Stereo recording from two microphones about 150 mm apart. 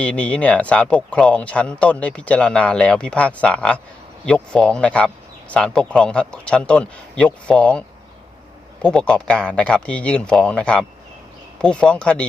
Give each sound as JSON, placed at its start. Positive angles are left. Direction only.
{"t": 0.0, "sound": "speech", "side_deg": 10}